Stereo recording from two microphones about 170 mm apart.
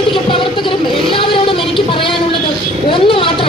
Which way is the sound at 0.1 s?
30° left (ahead or behind).